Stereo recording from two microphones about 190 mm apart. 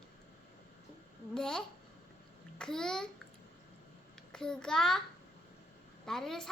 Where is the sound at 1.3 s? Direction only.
5° left (ahead or behind).